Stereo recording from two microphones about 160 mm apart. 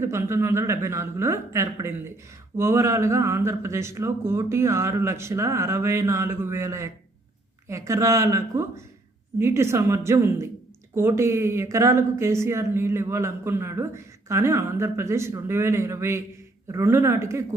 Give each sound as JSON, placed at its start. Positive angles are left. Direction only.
{"t": 0.0, "sound": "a woman's voice", "side_deg": -15}